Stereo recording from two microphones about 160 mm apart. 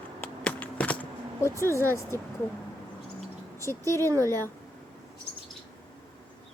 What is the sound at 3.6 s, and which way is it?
Speech, 15° left (ahead or behind).